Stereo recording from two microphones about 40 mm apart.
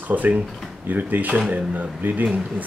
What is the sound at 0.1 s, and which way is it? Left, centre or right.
Speech, right.